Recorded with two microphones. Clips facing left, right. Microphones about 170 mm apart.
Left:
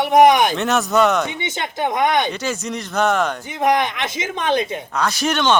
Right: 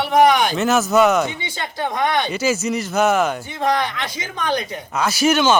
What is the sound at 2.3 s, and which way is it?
Speech, 5° right (ahead or behind).